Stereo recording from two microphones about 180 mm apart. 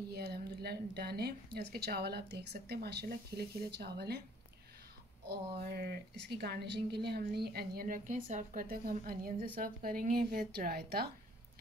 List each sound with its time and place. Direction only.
0.1 s a woman's voice: 60° right (ahead or behind)
5.3 s a woman's voice: 60° right (ahead or behind)